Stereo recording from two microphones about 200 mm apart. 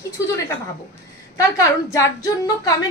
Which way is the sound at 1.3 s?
15° left (ahead or behind).